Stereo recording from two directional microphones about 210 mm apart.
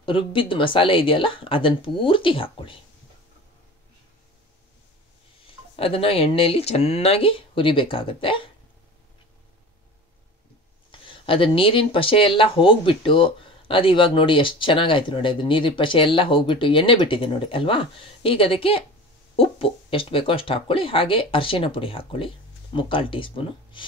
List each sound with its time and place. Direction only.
0.0 s speech: 25° left (ahead or behind)
5.8 s speech: 25° left (ahead or behind)
10.9 s speech: 25° left (ahead or behind)